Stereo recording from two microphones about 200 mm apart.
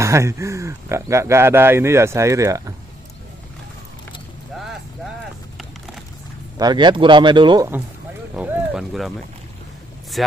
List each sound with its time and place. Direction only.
0.0 s speech: 15° right (ahead or behind)
6.6 s speech: 20° right (ahead or behind)
8.4 s a sound: centre (ahead or behind)
10.2 s speech: centre (ahead or behind)